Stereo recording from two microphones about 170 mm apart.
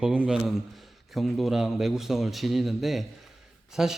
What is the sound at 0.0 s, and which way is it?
A man's voice, 5° right (ahead or behind).